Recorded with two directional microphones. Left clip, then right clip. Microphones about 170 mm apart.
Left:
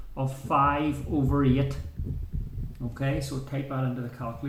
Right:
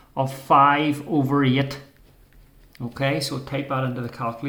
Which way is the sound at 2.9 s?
50° right (ahead or behind).